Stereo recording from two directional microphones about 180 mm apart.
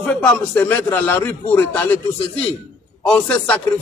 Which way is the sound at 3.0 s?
5° left (ahead or behind).